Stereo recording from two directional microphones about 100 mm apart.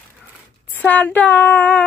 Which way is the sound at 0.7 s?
15° left (ahead or behind).